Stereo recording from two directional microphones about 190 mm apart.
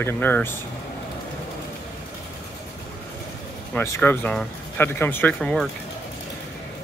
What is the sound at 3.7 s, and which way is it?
Speech, 10° left (ahead or behind).